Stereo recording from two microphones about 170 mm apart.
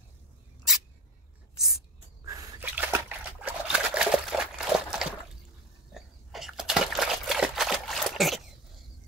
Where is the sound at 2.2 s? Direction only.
20° right (ahead or behind).